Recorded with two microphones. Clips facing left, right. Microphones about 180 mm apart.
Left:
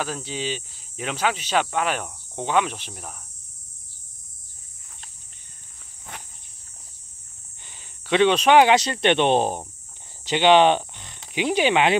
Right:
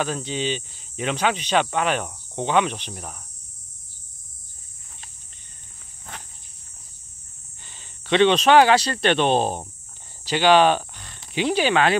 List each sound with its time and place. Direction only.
0.0 s speech: 5° left (ahead or behind)
7.6 s speech: 10° left (ahead or behind)